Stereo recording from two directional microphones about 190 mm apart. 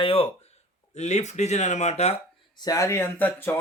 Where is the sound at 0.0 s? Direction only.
30° left (ahead or behind).